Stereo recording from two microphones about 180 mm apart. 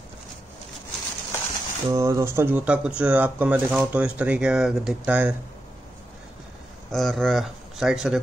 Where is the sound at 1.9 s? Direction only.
15° right (ahead or behind).